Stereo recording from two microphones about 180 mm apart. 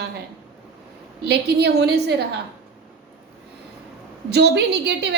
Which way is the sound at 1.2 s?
65° right (ahead or behind).